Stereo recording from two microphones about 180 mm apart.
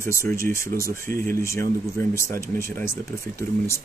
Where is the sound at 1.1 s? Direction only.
50° right (ahead or behind).